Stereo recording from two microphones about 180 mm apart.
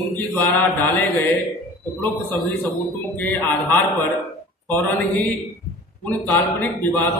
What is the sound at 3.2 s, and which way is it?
Speech, 10° left (ahead or behind).